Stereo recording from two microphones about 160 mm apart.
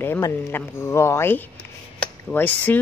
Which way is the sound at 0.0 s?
15° left (ahead or behind).